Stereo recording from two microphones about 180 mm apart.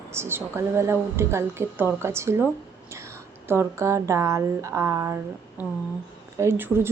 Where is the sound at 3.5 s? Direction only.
15° right (ahead or behind).